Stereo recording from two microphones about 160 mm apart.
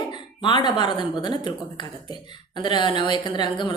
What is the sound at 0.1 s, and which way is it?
A woman's voice, 30° left (ahead or behind).